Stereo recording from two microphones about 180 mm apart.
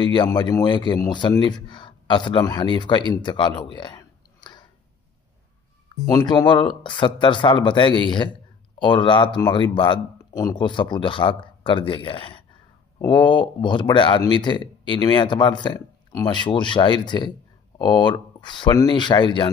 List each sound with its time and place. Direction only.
0.0 s speech: 25° left (ahead or behind)
6.0 s speech: 20° left (ahead or behind)